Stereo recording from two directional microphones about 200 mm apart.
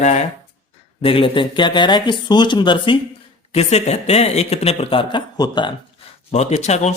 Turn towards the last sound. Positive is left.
turn(degrees=35)  # may be behind; listen again after turning